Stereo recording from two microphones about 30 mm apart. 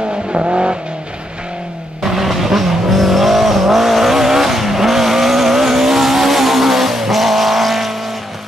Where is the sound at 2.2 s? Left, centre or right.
Centre.